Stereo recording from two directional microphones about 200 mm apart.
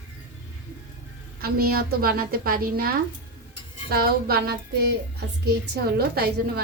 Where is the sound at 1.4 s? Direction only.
50° right (ahead or behind).